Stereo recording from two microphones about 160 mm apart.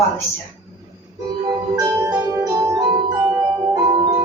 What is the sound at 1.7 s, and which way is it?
Music, 20° right (ahead or behind).